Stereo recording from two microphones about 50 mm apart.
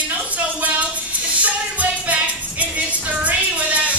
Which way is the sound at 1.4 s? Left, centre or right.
Right.